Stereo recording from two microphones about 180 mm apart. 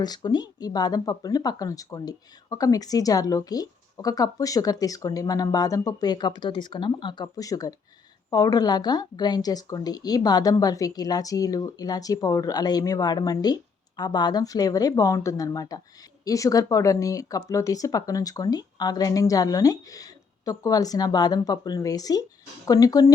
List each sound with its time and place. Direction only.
0.0 s speech: 20° left (ahead or behind)